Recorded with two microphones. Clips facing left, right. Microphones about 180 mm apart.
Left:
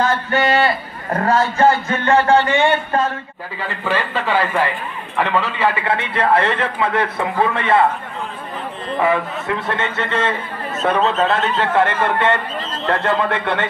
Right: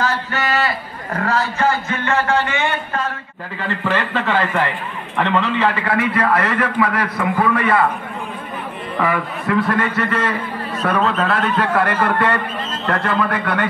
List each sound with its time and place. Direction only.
0.3 s speech: 30° left (ahead or behind)
1.9 s speech: 35° left (ahead or behind)
3.6 s a man's voice: 10° left (ahead or behind)
5.9 s a man's voice: 25° left (ahead or behind)
9.0 s a man's voice: 25° left (ahead or behind)